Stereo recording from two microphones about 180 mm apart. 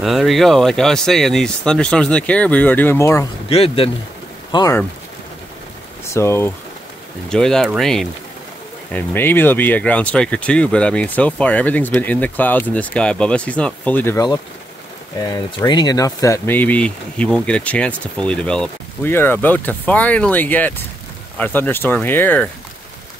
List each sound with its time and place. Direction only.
0.0 s speech: centre (ahead or behind); by 3.3 s 15° left (ahead or behind)
3.4 s speech: 35° left (ahead or behind)
6.1 s speech: 15° left (ahead or behind)
7.2 s speech: 5° left (ahead or behind)